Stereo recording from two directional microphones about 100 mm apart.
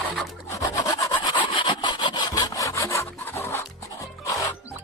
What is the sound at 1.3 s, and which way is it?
Sawing, 55° left (ahead or behind).